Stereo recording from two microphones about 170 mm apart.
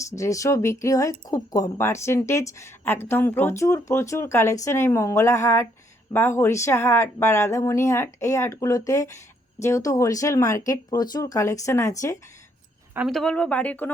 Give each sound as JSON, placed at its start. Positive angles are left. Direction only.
{"t": 0.1, "sound": "speech", "side_deg": 20}
{"t": 13.1, "sound": "speech", "side_deg": 5}